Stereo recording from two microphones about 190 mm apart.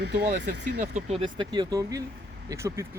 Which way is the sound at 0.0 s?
60° right (ahead or behind).